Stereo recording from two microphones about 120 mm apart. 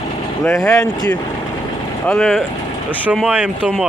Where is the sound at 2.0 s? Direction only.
5° left (ahead or behind).